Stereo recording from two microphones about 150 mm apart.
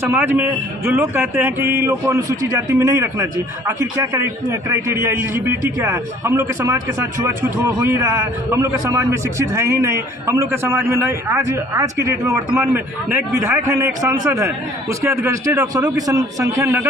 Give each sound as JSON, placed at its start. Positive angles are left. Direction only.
{"t": 0.0, "sound": "speech", "side_deg": -15}